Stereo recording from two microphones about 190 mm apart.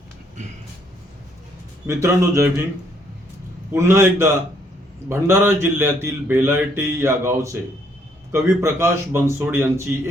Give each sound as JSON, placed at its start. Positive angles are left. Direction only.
{"t": 1.9, "sound": "speech", "side_deg": -15}
{"t": 3.7, "sound": "speech", "side_deg": -15}